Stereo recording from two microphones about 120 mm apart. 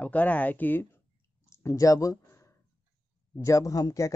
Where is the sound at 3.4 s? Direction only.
25° left (ahead or behind).